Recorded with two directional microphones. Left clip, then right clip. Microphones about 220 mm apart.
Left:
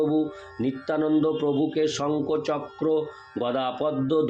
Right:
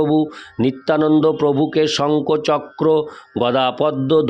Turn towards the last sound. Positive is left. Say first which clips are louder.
# right 8 dB
turn(degrees=-50)  # may be behind; listen again after turning